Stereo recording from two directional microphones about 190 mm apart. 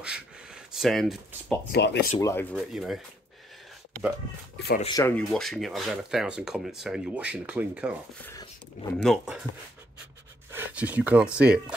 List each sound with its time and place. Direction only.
0.0 s a sound: 5° right (ahead or behind)
1.7 s speech: 60° left (ahead or behind)
2.1 s speech: 15° left (ahead or behind)
2.5 s speech: centre (ahead or behind)
4.8 s speech: 20° left (ahead or behind)
5.1 s speech: centre (ahead or behind)
8.2 s speech: 15° left (ahead or behind)
9.0 s speech: centre (ahead or behind)
10.5 s speech: 10° right (ahead or behind)